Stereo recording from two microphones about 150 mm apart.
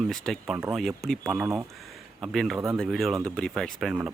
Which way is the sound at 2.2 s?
Centre (ahead or behind).